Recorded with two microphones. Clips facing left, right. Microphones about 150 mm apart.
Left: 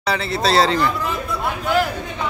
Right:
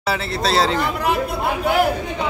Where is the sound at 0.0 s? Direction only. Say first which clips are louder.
Left 1 dB; 5° right (ahead or behind).